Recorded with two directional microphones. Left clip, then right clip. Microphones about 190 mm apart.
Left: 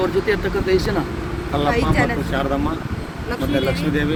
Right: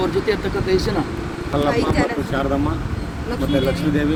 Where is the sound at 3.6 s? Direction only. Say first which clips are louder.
Right 1 dB; 20° left (ahead or behind).